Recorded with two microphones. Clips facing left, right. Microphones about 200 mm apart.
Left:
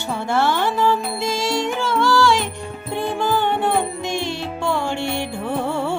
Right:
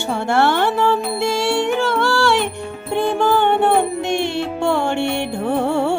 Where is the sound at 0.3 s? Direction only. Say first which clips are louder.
Right 3 dB; 65° right (ahead or behind).